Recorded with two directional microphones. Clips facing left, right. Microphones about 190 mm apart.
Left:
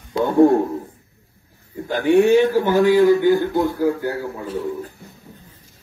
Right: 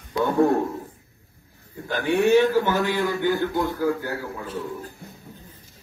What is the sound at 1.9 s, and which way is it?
A man's voice, 15° left (ahead or behind).